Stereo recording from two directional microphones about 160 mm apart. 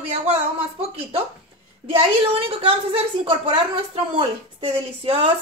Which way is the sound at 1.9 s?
35° right (ahead or behind).